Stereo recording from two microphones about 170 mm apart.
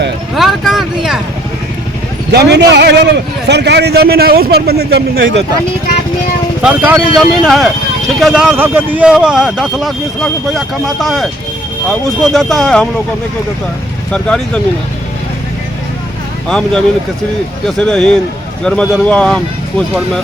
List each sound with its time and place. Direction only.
0.3 s a sound: centre (ahead or behind)
2.3 s a man's voice: 80° right
6.6 s speech: 5° right (ahead or behind)
14.1 s speech: 5° left (ahead or behind)
16.5 s speech: 5° left (ahead or behind)